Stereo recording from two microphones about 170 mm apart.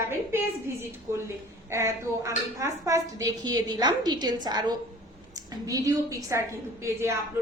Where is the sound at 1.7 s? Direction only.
15° right (ahead or behind).